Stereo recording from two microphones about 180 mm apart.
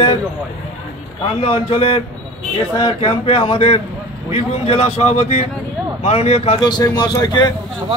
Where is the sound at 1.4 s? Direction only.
30° left (ahead or behind).